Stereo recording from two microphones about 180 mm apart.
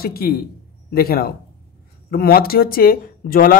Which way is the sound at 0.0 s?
55° left (ahead or behind).